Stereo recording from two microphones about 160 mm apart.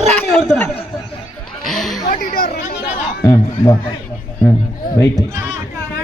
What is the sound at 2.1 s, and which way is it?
Chatter, 70° left (ahead or behind).